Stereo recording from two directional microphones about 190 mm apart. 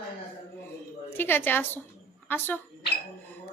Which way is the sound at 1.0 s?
10° left (ahead or behind).